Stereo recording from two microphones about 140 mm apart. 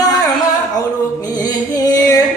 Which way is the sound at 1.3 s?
25° left (ahead or behind).